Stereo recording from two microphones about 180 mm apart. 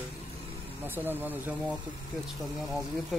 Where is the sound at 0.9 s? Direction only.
10° right (ahead or behind).